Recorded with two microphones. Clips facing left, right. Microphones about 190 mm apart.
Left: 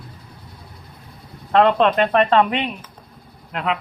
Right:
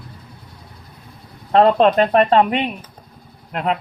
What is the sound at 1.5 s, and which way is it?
Speech, 35° right (ahead or behind).